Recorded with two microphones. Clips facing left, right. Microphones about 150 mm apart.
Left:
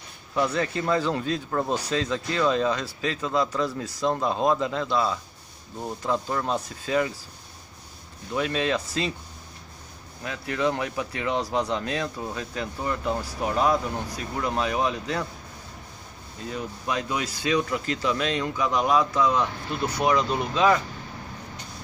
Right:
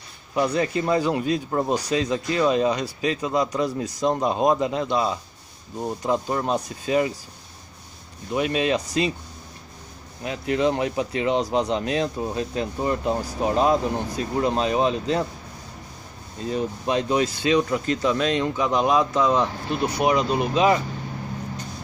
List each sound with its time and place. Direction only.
0.3 s speech: 15° right (ahead or behind)
8.3 s speech: 20° right (ahead or behind)
10.2 s speech: 20° right (ahead or behind)
16.4 s speech: 25° right (ahead or behind)